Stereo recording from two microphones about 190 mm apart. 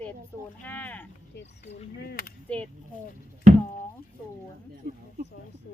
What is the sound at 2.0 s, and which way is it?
Speech, 55° left (ahead or behind).